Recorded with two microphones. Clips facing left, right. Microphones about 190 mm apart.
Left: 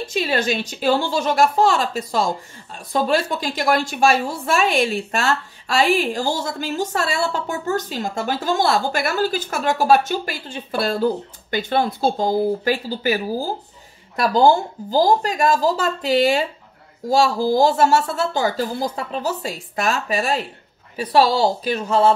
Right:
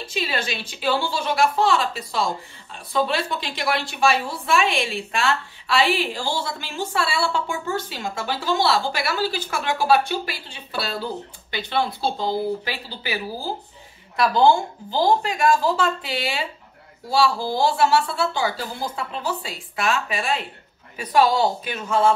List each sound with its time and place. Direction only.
0.0 s a woman's voice: 45° left (ahead or behind)